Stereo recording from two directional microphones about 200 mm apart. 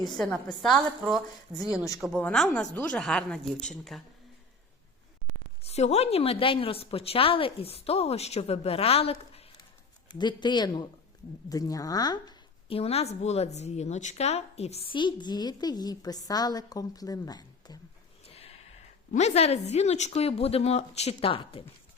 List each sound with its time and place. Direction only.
0.6 s speech: centre (ahead or behind)
5.6 s a woman's voice: 35° left (ahead or behind)
12.6 s speech: 30° left (ahead or behind)
18.3 s a sound: 30° left (ahead or behind)
19.1 s speech: 35° left (ahead or behind)